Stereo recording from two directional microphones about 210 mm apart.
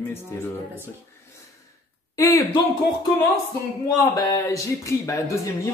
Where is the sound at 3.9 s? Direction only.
15° left (ahead or behind).